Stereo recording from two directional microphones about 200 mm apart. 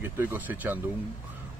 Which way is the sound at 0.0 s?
10° right (ahead or behind).